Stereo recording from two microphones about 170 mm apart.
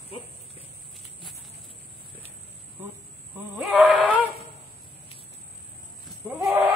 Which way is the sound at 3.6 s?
Centre (ahead or behind).